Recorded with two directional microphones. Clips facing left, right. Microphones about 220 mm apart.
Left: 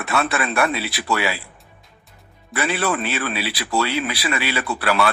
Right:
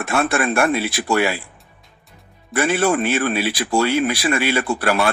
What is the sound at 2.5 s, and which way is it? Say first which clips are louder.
Speech: right 5 dB; 45° right (ahead or behind).